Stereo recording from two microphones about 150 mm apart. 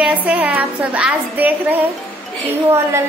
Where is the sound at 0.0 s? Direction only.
10° right (ahead or behind).